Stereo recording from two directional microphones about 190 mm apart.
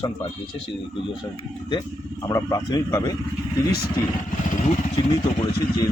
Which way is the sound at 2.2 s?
20° left (ahead or behind).